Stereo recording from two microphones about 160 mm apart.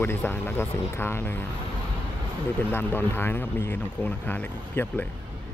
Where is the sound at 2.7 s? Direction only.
15° left (ahead or behind).